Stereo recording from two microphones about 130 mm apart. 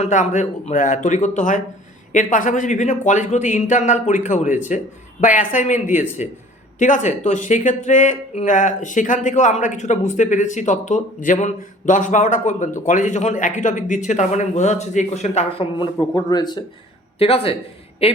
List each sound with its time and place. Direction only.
0.0 s speech: 65° left (ahead or behind)
5.2 s speech: 80° left; by 15.6 s 55° left (ahead or behind)
15.8 s speech: 35° left (ahead or behind)
17.2 s speech: 50° left (ahead or behind)